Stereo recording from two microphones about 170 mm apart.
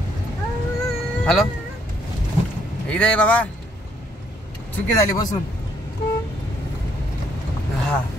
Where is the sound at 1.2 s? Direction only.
Centre (ahead or behind).